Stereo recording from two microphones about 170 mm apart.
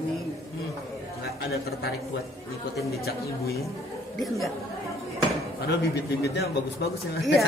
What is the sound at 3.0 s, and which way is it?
Speech, 65° left (ahead or behind).